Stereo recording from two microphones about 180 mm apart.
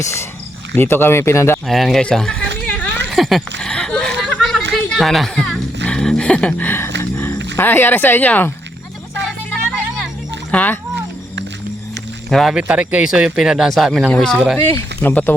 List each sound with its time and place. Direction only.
0.0 s speech: 15° left (ahead or behind)
1.6 s a man's voice: centre (ahead or behind)
2.6 s a sound: 5° left (ahead or behind)
3.1 s speech: centre (ahead or behind)
3.6 s a sound: 5° left (ahead or behind)
4.7 s speech: centre (ahead or behind)
7.0 s roaring cats: 15° left (ahead or behind)
7.5 s speech: 10° left (ahead or behind)
9.2 s music: centre (ahead or behind)
10.5 s speech: 10° left (ahead or behind)
12.3 s a man's voice: centre (ahead or behind)
14.6 s speech: 15° left (ahead or behind)